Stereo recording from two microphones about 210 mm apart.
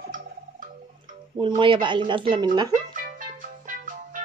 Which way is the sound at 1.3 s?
20° right (ahead or behind).